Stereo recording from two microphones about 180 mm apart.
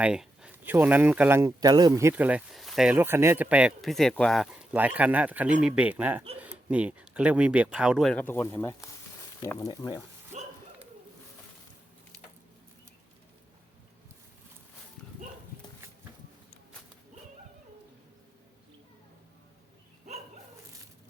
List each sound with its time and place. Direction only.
0.0 s speech: 5° right (ahead or behind)
8.1 s speech: 10° left (ahead or behind)
10.3 s a sound: 40° right (ahead or behind)